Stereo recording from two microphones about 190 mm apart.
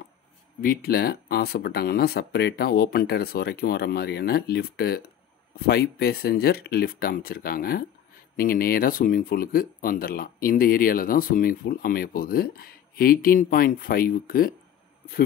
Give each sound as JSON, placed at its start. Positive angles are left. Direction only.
{"t": 0.6, "sound": "speech", "side_deg": 50}